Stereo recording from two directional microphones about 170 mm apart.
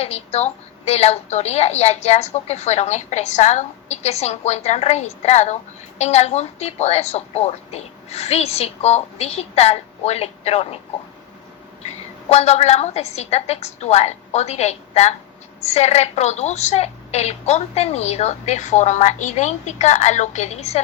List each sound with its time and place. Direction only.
0.0 s a woman's voice: 35° left (ahead or behind)
12.3 s a woman's voice: 40° left (ahead or behind)